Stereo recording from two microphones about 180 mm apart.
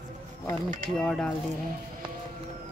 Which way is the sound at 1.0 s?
5° left (ahead or behind).